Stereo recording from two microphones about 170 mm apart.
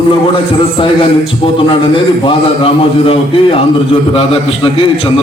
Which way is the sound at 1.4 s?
30° left (ahead or behind).